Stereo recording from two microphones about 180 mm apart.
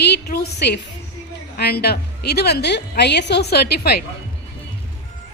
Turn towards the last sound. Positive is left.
turn(degrees=60)  # may be behind; listen again after turning